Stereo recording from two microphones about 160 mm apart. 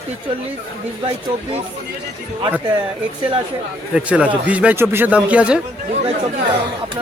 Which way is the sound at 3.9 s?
5° right (ahead or behind).